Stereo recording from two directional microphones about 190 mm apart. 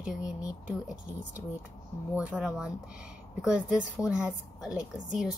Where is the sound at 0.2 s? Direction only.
20° left (ahead or behind).